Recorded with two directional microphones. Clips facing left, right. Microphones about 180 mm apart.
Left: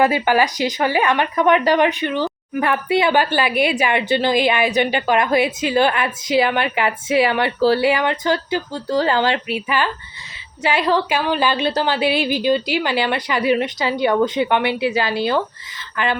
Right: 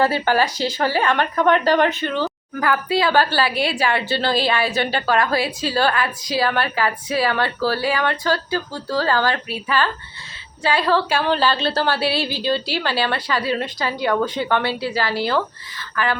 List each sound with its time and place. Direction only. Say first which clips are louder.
0.0 s speech: left 2 dB; 15° left (ahead or behind)